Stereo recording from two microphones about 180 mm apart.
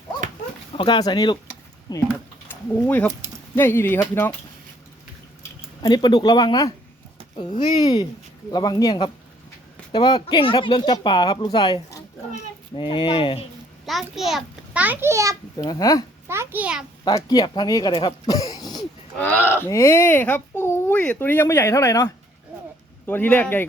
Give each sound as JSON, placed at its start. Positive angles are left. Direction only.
{"t": 0.8, "sound": "speech", "side_deg": 25}
{"t": 2.5, "sound": "speech", "side_deg": 10}
{"t": 5.4, "sound": "speech", "side_deg": 20}
{"t": 7.5, "sound": "speech", "side_deg": 40}
{"t": 8.5, "sound": "a child's voice", "side_deg": 20}
{"t": 13.8, "sound": "a child's voice", "side_deg": 0}
{"t": 15.5, "sound": "speech", "side_deg": 20}
{"t": 16.2, "sound": "a child's voice", "side_deg": -15}
{"t": 17.0, "sound": "speech", "side_deg": 20}
{"t": 19.2, "sound": "speech", "side_deg": 10}